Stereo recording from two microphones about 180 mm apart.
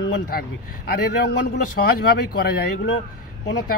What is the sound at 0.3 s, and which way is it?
Speech, 60° left (ahead or behind).